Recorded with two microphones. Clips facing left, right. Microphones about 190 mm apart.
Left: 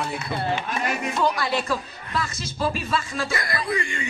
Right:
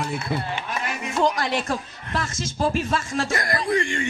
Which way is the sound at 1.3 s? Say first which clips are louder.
Even; 45° right (ahead or behind).